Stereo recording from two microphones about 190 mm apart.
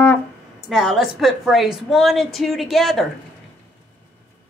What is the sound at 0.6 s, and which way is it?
A woman's voice, centre (ahead or behind).